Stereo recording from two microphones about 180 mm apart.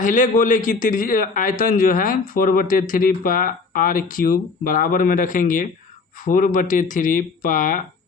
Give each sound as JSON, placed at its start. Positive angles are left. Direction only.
{"t": 0.0, "sound": "a man's voice", "side_deg": 45}